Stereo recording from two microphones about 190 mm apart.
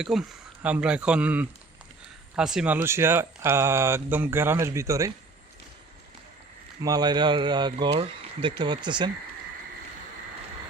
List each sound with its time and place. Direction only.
0.0 s speech: 5° right (ahead or behind)
6.8 s speech: 20° right (ahead or behind)